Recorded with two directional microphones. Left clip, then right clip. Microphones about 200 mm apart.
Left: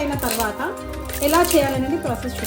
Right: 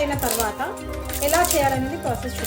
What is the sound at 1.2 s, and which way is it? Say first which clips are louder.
Speech: left 3 dB; 5° right (ahead or behind).